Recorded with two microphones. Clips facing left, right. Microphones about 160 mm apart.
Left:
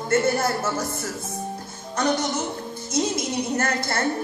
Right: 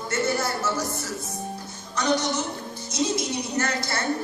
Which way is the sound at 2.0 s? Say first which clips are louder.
Left 1 dB; 50° left (ahead or behind).